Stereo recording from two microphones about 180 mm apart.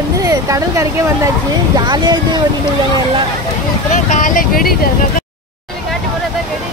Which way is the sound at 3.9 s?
45° left (ahead or behind).